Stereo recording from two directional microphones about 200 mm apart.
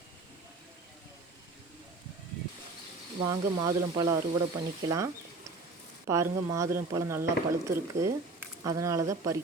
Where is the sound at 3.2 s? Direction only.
20° right (ahead or behind).